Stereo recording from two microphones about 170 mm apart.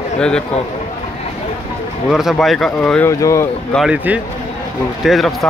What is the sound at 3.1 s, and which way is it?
Speech, 20° left (ahead or behind).